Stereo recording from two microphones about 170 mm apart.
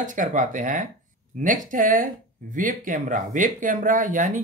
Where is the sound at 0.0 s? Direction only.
50° right (ahead or behind).